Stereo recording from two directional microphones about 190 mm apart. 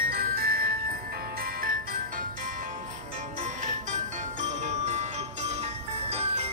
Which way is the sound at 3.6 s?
40° right (ahead or behind).